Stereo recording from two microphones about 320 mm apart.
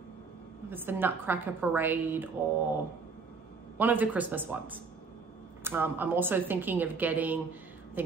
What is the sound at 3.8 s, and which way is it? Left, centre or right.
A woman's voice, centre.